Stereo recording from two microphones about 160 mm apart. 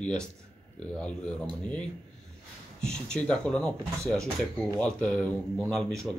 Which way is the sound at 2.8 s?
5° left (ahead or behind).